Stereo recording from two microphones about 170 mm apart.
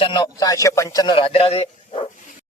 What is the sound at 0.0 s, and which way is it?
A man's voice, 30° left (ahead or behind).